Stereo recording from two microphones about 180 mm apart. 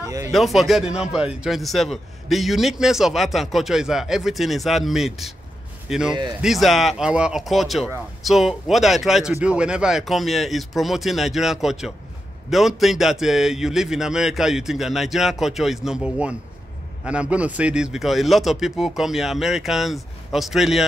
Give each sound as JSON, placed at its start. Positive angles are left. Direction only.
{"t": 0.0, "sound": "a man's voice", "side_deg": -15}
{"t": 0.3, "sound": "a man's voice", "side_deg": 0}